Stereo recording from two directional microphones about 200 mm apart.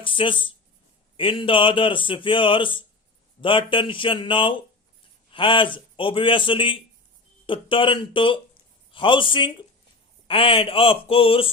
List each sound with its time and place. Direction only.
0.0 s a man's voice: 25° left (ahead or behind)